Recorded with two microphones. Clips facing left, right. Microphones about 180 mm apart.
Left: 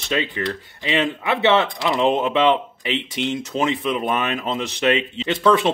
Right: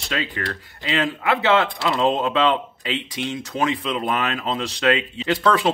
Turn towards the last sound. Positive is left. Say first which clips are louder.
# left 2 dB
turn(degrees=25)  # may be behind; listen again after turning